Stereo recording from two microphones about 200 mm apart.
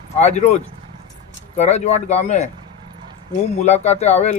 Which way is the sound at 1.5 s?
35° left (ahead or behind).